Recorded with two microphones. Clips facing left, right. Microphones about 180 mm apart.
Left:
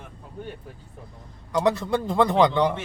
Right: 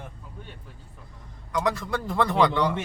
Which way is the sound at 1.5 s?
30° left (ahead or behind).